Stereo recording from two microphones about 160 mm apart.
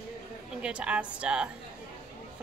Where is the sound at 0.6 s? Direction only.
5° right (ahead or behind).